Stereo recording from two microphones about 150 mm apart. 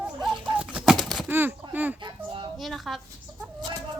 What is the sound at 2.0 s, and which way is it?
Music, 30° right (ahead or behind).